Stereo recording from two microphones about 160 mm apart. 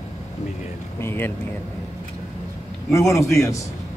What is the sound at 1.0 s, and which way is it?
Speech, 15° left (ahead or behind).